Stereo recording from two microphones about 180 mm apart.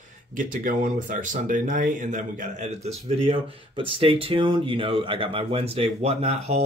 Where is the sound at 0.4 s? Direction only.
50° right (ahead or behind).